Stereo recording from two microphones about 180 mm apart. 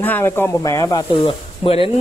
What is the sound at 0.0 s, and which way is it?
Speech, 10° left (ahead or behind).